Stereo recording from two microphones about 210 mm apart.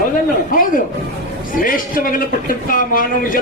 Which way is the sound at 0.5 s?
40° left (ahead or behind).